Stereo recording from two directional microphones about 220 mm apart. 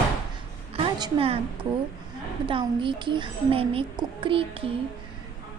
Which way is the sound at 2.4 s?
25° right (ahead or behind).